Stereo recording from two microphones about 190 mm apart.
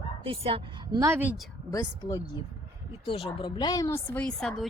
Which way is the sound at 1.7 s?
15° left (ahead or behind).